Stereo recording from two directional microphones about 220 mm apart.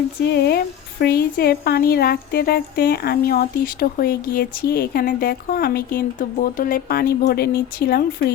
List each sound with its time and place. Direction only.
0.2 s speech: 45° left (ahead or behind)